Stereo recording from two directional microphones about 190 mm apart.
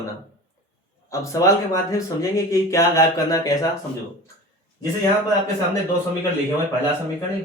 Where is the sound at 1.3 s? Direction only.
15° left (ahead or behind).